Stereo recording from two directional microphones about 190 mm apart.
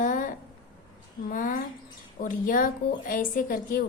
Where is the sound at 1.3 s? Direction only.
45° left (ahead or behind).